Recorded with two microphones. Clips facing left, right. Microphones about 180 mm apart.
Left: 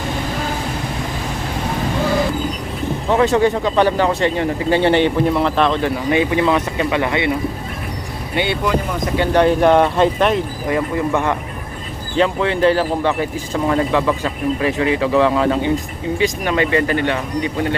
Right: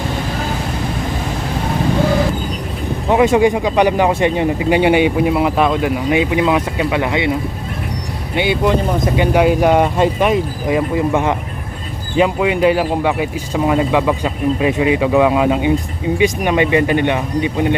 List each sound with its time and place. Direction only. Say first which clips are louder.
3.1 s speech: right 3 dB; 15° right (ahead or behind)
8.4 s speech: right 3 dB; 15° right (ahead or behind)